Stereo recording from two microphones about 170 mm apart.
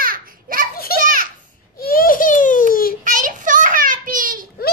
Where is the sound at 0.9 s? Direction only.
55° right (ahead or behind).